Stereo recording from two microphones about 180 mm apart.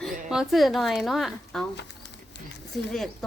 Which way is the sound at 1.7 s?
70° left (ahead or behind).